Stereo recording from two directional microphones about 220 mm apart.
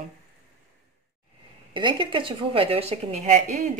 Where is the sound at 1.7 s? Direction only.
20° right (ahead or behind).